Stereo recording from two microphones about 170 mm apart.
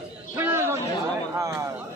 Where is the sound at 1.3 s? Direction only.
20° right (ahead or behind).